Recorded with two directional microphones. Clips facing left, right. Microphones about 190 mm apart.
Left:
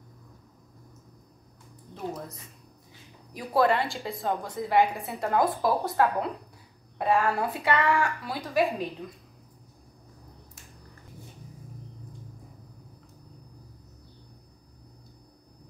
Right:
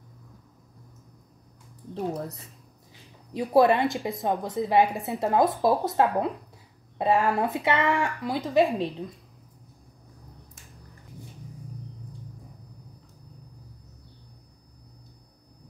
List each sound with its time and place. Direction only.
3.3 s a woman's voice: 20° right (ahead or behind)